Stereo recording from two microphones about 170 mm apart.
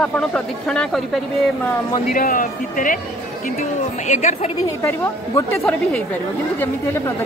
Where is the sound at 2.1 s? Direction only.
55° left (ahead or behind).